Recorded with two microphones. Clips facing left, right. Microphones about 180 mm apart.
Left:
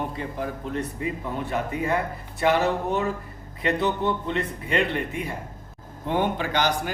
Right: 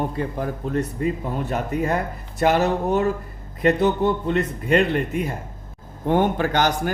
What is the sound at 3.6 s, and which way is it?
Speech, 45° right (ahead or behind).